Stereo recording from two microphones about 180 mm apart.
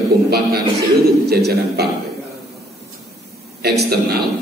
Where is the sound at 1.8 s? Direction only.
60° right (ahead or behind).